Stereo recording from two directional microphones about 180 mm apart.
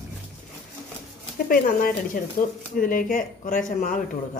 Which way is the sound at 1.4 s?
50° left (ahead or behind).